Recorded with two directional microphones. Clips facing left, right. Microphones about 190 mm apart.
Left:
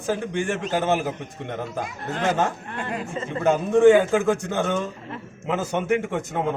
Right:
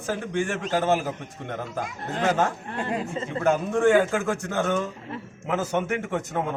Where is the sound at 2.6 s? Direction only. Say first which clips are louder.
Right 1 dB; 30° right (ahead or behind).